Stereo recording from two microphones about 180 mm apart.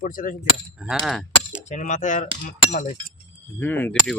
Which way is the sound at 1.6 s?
40° left (ahead or behind).